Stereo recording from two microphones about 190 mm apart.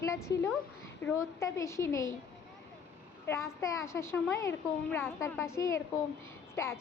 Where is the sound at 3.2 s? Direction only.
15° left (ahead or behind).